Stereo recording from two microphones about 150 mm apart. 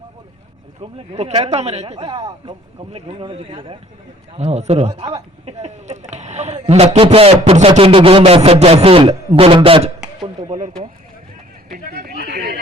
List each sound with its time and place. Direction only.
0.8 s speech: 40° right (ahead or behind)
11.7 s a sound: 90° right
12.2 s chatter: 90° right